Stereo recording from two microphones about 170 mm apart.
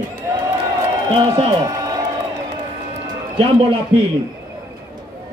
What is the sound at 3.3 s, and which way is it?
Speech, 30° right (ahead or behind).